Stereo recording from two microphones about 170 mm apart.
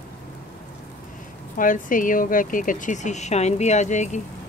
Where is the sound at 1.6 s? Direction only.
50° left (ahead or behind).